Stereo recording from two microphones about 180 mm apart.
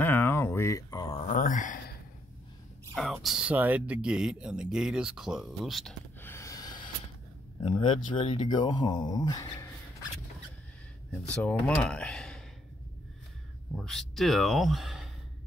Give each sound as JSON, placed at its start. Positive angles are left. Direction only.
{"t": 0.0, "sound": "a sound", "side_deg": 10}
{"t": 1.1, "sound": "a sound", "side_deg": 45}
{"t": 2.9, "sound": "speech", "side_deg": 0}
{"t": 6.2, "sound": "gasp", "side_deg": 15}
{"t": 7.6, "sound": "speech", "side_deg": 30}
{"t": 11.1, "sound": "speech", "side_deg": 5}
{"t": 13.7, "sound": "speech", "side_deg": 0}